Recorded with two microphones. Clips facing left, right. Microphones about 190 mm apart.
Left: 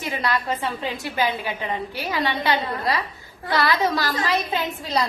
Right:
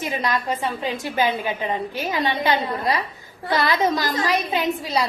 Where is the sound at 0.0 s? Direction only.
20° right (ahead or behind).